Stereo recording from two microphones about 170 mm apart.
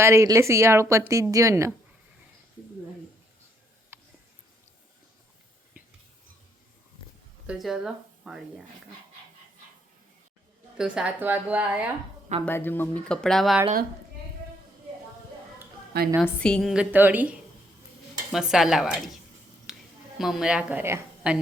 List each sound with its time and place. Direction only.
0.0 s a woman's voice: 15° right (ahead or behind)
3.9 s music: 15° right (ahead or behind)
7.4 s speech: centre (ahead or behind)
10.8 s a woman's voice: 5° right (ahead or behind)
12.5 s speech: 10° left (ahead or behind)
16.2 s a woman's voice: 5° left (ahead or behind)
19.7 s a sound: 5° right (ahead or behind)
20.1 s a woman's voice: centre (ahead or behind)